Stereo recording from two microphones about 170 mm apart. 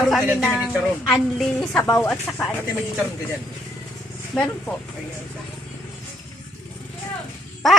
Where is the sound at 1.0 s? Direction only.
5° left (ahead or behind).